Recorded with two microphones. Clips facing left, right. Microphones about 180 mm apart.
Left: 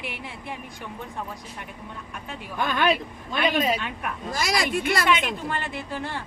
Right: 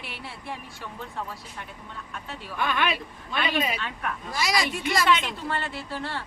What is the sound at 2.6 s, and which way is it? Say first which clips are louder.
Speech: left 4 dB; 40° left (ahead or behind).